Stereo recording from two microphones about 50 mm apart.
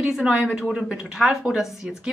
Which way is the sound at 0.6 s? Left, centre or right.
Centre.